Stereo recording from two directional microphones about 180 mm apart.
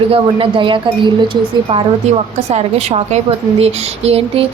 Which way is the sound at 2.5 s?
35° right (ahead or behind).